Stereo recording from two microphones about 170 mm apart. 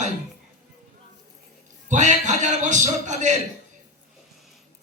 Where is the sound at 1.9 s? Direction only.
45° right (ahead or behind).